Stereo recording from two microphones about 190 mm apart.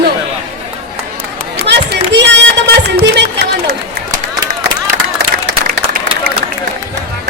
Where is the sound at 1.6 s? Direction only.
60° right (ahead or behind).